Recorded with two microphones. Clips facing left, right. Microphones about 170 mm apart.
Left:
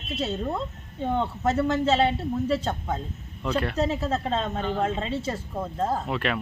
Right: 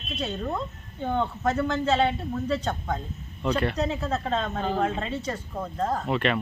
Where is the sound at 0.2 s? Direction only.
30° left (ahead or behind).